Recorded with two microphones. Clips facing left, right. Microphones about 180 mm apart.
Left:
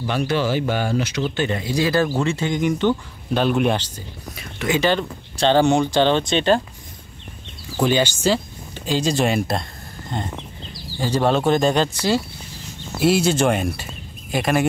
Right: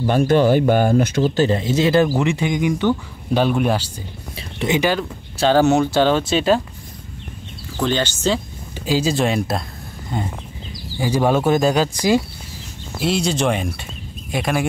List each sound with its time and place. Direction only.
0.0 s speech: 45° right (ahead or behind)
1.6 s speech: 25° right (ahead or behind); by 3.9 s 5° right (ahead or behind)
4.4 s a sound: 25° right (ahead or behind)
4.7 s speech: 5° right (ahead or behind)
7.8 s speech: 10° left (ahead or behind)
8.7 s speech: 5° right (ahead or behind)
13.0 s speech: 5° left (ahead or behind)